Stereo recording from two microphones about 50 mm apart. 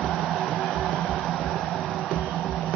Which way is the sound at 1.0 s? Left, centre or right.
Centre.